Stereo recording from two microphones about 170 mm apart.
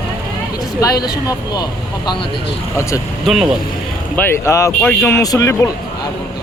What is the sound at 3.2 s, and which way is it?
Speech, 5° right (ahead or behind).